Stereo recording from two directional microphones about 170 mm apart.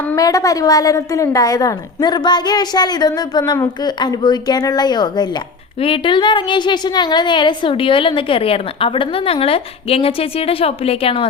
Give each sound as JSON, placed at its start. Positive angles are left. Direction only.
{"t": 0.2, "sound": "a woman's voice", "side_deg": 20}